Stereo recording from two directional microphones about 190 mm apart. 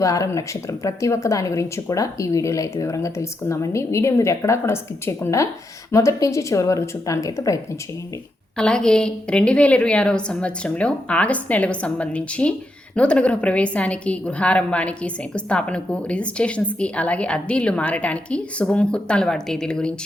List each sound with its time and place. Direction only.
0.0 s a woman's voice: 15° left (ahead or behind)
8.5 s a woman's voice: 5° left (ahead or behind)